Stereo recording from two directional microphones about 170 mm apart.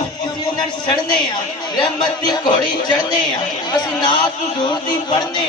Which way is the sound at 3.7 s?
25° left (ahead or behind).